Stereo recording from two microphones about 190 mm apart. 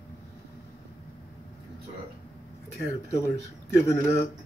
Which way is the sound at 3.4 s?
15° left (ahead or behind).